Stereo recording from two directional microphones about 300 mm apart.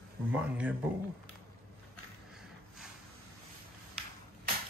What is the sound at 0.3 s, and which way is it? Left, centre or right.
Speech, centre.